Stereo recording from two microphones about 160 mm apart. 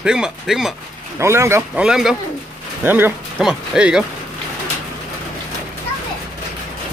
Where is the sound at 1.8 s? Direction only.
5° right (ahead or behind).